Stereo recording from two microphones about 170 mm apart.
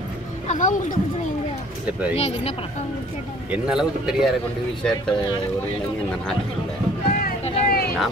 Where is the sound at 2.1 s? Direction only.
40° left (ahead or behind).